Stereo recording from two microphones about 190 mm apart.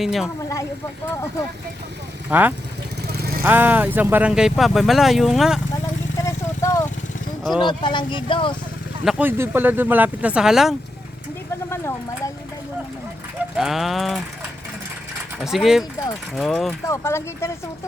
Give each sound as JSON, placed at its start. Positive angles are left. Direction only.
{"t": 0.0, "sound": "speech", "side_deg": 0}
{"t": 2.3, "sound": "speech", "side_deg": -10}
{"t": 3.1, "sound": "vehicle", "side_deg": -55}
{"t": 3.4, "sound": "speech", "side_deg": -10}
{"t": 6.2, "sound": "vehicle", "side_deg": 15}
{"t": 7.6, "sound": "speech", "side_deg": 25}
{"t": 9.0, "sound": "speech", "side_deg": -10}
{"t": 11.7, "sound": "speech", "side_deg": 15}
{"t": 13.6, "sound": "speech", "side_deg": 0}
{"t": 15.4, "sound": "speech", "side_deg": 0}
{"t": 16.8, "sound": "speech", "side_deg": 15}